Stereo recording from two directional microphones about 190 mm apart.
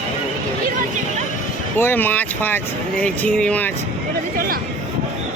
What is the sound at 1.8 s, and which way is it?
Speech, 10° left (ahead or behind).